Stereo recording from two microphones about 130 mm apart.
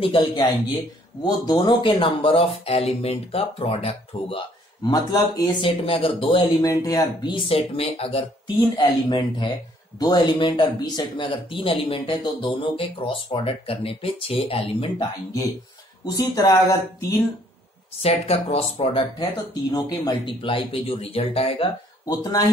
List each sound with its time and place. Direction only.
0.0 s speech: 40° left (ahead or behind)
4.8 s speech: 30° left (ahead or behind)
5.6 s speech: 45° left (ahead or behind)
6.6 s speech: 25° left (ahead or behind); by 8.3 s 50° left (ahead or behind)
8.5 s speech: 35° left (ahead or behind)
16.1 s speech: 30° left (ahead or behind)
18.0 s speech: 50° left (ahead or behind)
19.1 s speech: 30° left (ahead or behind)
22.0 s speech: 30° left (ahead or behind)